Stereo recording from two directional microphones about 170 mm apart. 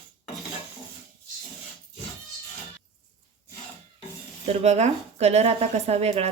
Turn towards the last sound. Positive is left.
turn(degrees=-35)  # may be behind; listen again after turning